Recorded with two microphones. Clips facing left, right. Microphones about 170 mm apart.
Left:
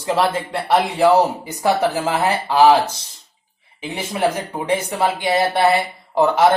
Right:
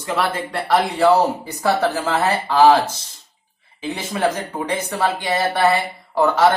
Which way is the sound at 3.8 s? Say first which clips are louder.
Even; 15° left (ahead or behind).